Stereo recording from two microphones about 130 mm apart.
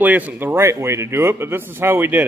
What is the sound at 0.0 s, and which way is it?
Speech, 10° right (ahead or behind).